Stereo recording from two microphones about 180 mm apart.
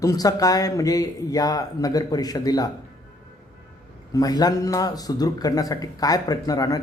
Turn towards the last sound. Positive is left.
turn(degrees=20)  # may be behind; listen again after turning